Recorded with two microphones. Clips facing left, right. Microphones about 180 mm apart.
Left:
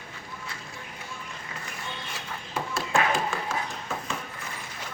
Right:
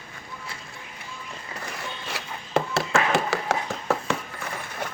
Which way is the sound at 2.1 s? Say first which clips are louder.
Right 3 dB; 80° right.